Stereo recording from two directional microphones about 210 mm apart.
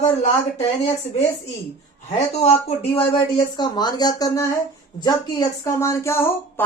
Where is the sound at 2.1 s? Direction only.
30° left (ahead or behind).